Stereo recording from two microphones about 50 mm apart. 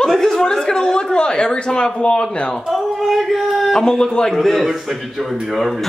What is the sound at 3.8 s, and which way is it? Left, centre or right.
Speech, centre.